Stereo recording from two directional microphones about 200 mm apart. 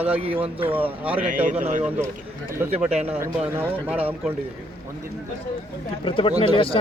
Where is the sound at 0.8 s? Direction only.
10° right (ahead or behind).